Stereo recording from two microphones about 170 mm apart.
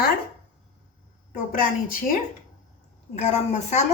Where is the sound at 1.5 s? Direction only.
50° left (ahead or behind).